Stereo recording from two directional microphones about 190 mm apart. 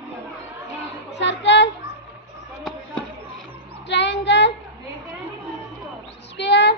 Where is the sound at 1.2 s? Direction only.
65° left (ahead or behind).